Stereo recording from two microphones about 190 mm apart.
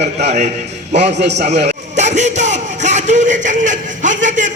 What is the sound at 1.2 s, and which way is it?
Speech, 60° right (ahead or behind).